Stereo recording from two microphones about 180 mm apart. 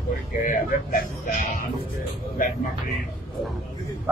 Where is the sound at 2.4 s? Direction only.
50° left (ahead or behind).